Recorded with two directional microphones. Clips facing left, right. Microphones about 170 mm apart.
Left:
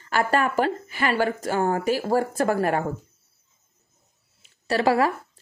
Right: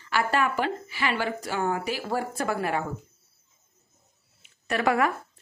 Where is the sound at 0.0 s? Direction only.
45° left (ahead or behind).